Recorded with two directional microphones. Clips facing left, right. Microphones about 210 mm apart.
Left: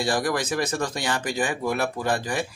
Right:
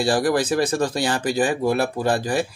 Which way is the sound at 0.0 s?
30° right (ahead or behind).